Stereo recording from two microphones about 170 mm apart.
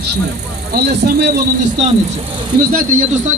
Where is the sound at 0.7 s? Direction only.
70° right (ahead or behind).